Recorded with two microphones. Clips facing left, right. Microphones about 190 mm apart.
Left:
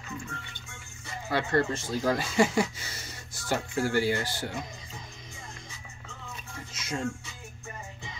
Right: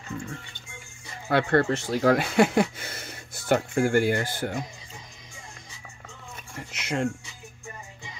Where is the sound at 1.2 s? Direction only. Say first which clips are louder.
Right 5 dB; 60° right (ahead or behind).